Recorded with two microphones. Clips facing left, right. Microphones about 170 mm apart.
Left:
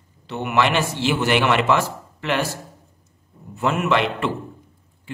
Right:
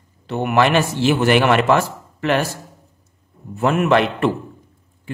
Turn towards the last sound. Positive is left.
turn(degrees=-45)  # may be behind; listen again after turning